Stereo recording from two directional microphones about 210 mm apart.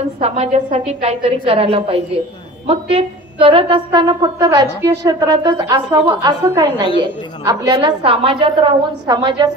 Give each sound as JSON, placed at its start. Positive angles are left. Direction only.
{"t": 0.2, "sound": "a woman's voice", "side_deg": -30}